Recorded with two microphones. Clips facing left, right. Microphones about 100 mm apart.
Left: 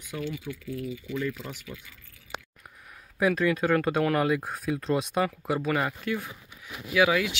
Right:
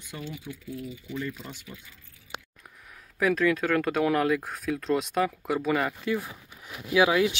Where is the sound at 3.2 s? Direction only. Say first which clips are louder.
Even; 10° left (ahead or behind).